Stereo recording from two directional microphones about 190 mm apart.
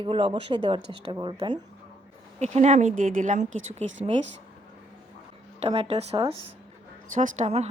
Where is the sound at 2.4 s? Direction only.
35° right (ahead or behind).